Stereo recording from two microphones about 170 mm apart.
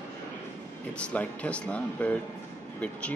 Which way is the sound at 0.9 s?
10° left (ahead or behind).